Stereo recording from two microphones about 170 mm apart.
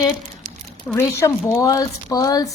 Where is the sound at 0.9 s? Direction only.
15° left (ahead or behind).